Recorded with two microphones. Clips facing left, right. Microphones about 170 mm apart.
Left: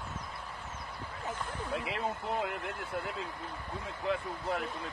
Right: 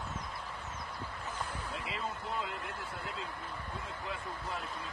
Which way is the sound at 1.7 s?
60° left (ahead or behind).